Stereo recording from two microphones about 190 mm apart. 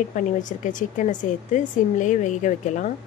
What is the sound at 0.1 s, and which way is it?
Speech, 40° left (ahead or behind).